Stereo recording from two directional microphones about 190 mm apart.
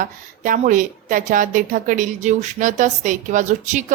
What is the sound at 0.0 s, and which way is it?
A woman's voice, 45° right (ahead or behind).